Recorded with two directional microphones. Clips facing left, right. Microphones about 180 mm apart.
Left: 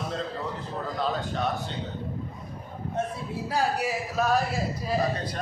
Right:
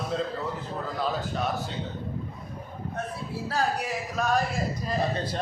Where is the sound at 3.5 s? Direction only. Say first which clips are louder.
Left 2 dB; 5° left (ahead or behind).